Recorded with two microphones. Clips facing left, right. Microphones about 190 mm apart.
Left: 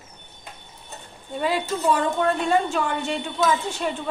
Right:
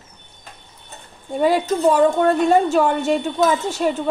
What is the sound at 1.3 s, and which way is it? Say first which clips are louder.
A woman's voice: right 7 dB; 45° right (ahead or behind).